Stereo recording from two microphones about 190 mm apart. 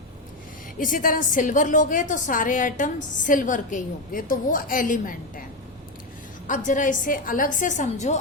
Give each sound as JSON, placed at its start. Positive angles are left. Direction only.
{"t": 0.8, "sound": "a woman's voice", "side_deg": 45}
{"t": 6.5, "sound": "a woman's voice", "side_deg": 40}